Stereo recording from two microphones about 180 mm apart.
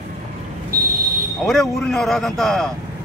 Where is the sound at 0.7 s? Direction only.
55° right (ahead or behind).